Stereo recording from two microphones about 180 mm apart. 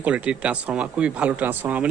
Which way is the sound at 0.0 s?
5° right (ahead or behind).